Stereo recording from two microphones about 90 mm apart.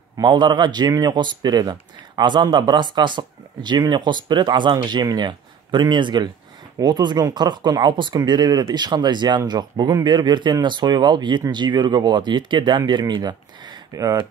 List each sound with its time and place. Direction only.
0.2 s speech: 55° right (ahead or behind)